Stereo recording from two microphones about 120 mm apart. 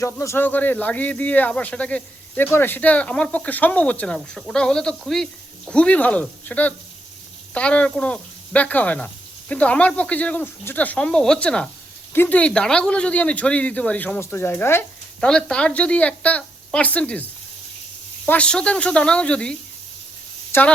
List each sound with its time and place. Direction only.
0.0 s speech: 25° left (ahead or behind)
15.2 s speech: 10° left (ahead or behind)
18.3 s speech: 10° left (ahead or behind)